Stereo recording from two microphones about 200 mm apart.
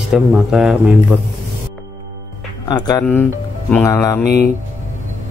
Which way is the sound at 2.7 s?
20° left (ahead or behind).